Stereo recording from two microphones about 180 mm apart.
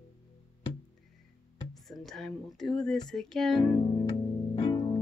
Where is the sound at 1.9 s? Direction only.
Centre (ahead or behind).